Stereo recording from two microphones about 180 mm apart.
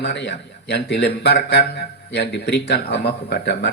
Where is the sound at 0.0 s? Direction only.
75° left (ahead or behind).